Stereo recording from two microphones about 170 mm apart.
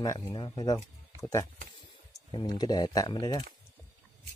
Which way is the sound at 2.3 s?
25° left (ahead or behind).